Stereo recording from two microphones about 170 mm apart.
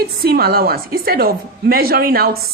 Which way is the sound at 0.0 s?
65° right (ahead or behind).